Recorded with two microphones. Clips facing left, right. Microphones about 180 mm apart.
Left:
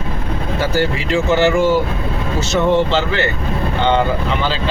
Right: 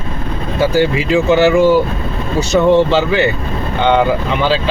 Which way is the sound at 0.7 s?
15° right (ahead or behind).